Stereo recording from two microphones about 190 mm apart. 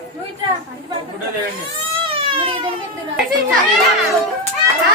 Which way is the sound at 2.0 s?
30° right (ahead or behind).